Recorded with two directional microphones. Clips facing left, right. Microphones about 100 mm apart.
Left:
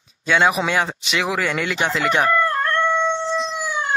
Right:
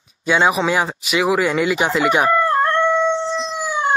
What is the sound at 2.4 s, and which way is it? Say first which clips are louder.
Howl: right 3 dB; 20° right (ahead or behind).